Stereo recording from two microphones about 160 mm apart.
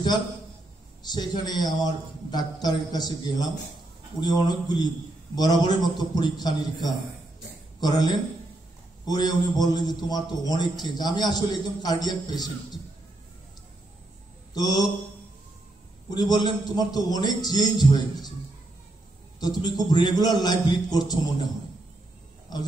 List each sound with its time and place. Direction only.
1.1 s a man's voice: 25° left (ahead or behind)
14.5 s a man's voice: 25° left (ahead or behind)
16.1 s a man's voice: 25° left (ahead or behind)
19.4 s a man's voice: 25° left (ahead or behind)